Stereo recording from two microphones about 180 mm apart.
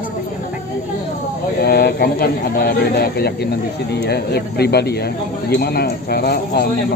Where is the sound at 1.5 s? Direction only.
60° left (ahead or behind).